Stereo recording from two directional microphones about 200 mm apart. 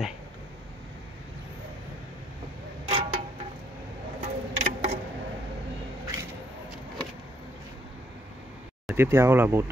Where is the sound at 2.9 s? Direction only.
30° right (ahead or behind).